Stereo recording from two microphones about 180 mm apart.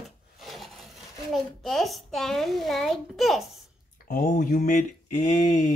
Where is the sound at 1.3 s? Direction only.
Centre (ahead or behind).